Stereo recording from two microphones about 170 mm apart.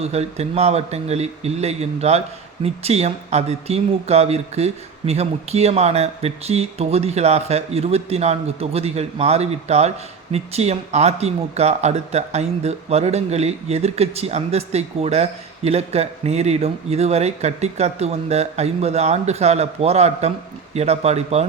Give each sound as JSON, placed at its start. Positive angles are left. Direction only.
{"t": 0.0, "sound": "speech", "side_deg": -40}